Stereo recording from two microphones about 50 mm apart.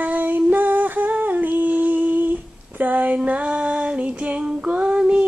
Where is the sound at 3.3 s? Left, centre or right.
Right.